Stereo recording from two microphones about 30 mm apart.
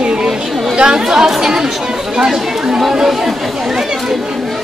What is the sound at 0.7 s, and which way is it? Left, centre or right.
Speech, right.